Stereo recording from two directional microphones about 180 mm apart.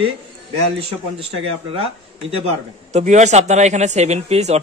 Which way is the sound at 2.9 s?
40° right (ahead or behind).